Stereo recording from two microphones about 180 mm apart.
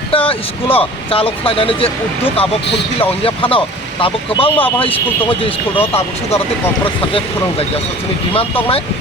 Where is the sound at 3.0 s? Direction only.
30° left (ahead or behind).